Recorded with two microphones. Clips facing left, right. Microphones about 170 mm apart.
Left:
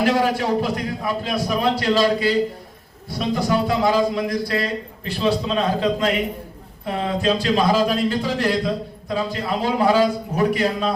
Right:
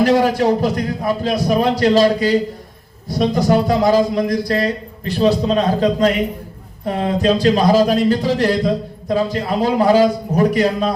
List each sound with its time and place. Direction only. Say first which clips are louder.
0.0 s speech: right 5 dB; 40° right (ahead or behind)